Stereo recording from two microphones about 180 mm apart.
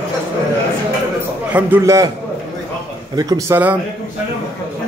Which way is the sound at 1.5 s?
10° right (ahead or behind).